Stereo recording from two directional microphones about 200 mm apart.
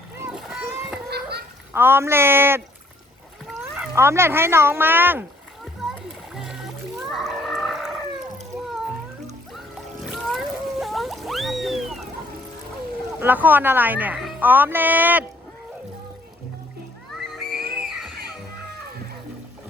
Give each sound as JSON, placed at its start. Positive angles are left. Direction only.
{"t": 0.2, "sound": "vehicle", "side_deg": -5}
{"t": 1.1, "sound": "goose", "side_deg": -55}
{"t": 1.7, "sound": "speech", "side_deg": -10}
{"t": 6.3, "sound": "music", "side_deg": 0}
{"t": 7.1, "sound": "a sound", "side_deg": 0}
{"t": 10.1, "sound": "music", "side_deg": 0}
{"t": 13.1, "sound": "speech", "side_deg": -10}
{"t": 17.3, "sound": "music", "side_deg": 0}